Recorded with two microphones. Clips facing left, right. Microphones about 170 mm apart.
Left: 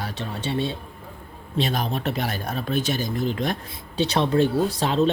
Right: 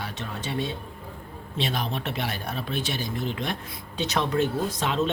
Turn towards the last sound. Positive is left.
turn(degrees=35)  # may be behind; listen again after turning